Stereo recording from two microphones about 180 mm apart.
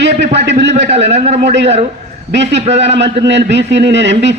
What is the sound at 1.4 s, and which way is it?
A man's voice, 75° right (ahead or behind).